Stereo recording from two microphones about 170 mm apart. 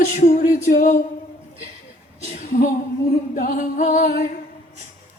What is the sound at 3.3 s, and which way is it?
Music, 50° left (ahead or behind).